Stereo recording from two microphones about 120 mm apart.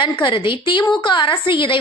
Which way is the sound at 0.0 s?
45° left (ahead or behind).